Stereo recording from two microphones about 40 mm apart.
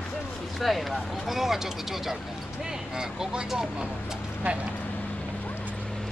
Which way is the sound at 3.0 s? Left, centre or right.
Right.